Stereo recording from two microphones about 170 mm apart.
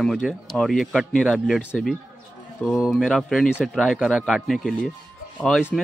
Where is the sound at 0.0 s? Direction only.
Centre (ahead or behind).